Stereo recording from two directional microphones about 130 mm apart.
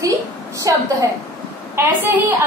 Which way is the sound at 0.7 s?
25° right (ahead or behind).